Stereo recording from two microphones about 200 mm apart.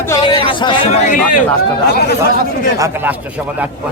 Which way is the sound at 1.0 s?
40° left (ahead or behind).